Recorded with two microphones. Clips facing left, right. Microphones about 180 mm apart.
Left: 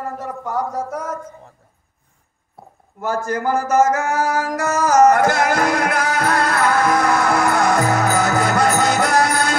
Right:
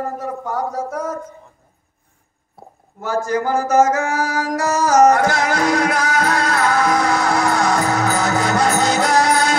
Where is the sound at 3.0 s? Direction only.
55° left (ahead or behind).